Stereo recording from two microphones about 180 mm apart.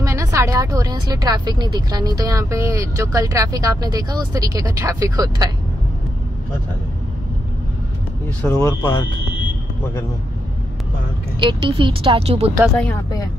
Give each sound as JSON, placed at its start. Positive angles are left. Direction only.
{"t": 0.0, "sound": "speech", "side_deg": -15}
{"t": 8.4, "sound": "speech", "side_deg": 15}
{"t": 11.3, "sound": "speech", "side_deg": -25}
{"t": 12.6, "sound": "speech", "side_deg": 0}